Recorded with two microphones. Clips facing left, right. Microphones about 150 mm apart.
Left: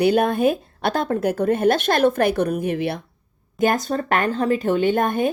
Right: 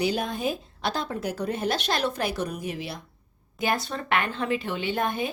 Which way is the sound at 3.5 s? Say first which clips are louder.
Left 8 dB; 45° left (ahead or behind).